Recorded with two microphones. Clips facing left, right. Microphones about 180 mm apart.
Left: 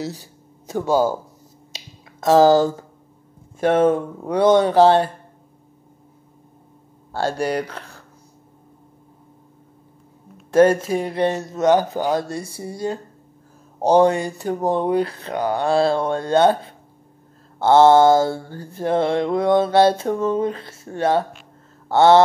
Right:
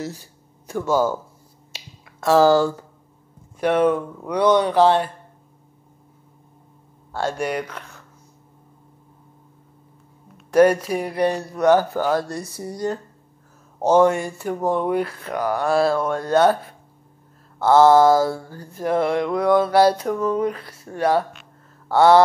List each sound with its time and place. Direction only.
0.8 s speech: 10° left (ahead or behind)
2.2 s mantra: 20° left (ahead or behind)
3.5 s speech: 45° left (ahead or behind)
7.1 s speech: 30° left (ahead or behind)
10.5 s mantra: 25° left (ahead or behind)
13.8 s speech: 35° left (ahead or behind)
15.1 s mantra: 25° left (ahead or behind)
21.8 s a sound: 25° left (ahead or behind)